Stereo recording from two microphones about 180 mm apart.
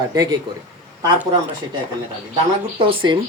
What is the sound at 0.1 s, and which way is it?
Speech, 20° right (ahead or behind).